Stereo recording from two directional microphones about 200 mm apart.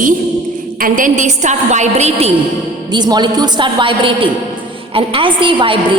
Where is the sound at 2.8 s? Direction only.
20° right (ahead or behind).